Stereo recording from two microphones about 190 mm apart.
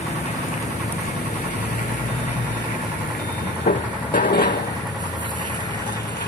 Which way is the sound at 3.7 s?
50° left (ahead or behind).